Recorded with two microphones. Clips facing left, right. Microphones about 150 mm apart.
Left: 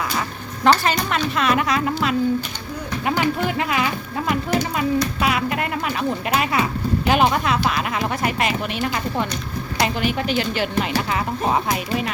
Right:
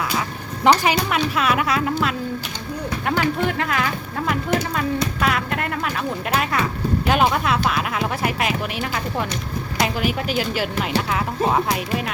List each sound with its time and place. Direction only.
0.6 s speech: 15° right (ahead or behind); by 3.8 s 5° left (ahead or behind)
5.2 s speech: 5° left (ahead or behind)